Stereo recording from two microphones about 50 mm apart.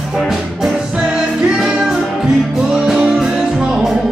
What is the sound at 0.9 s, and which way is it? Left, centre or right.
Music, centre.